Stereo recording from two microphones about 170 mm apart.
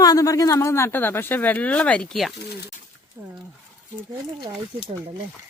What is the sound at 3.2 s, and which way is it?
Speech, 10° right (ahead or behind).